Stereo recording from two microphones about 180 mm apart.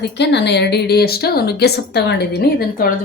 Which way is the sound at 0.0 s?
70° left (ahead or behind).